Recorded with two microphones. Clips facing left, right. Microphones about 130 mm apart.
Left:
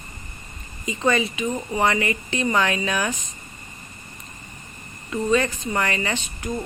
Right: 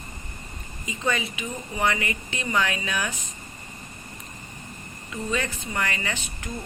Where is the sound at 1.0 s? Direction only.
40° left (ahead or behind).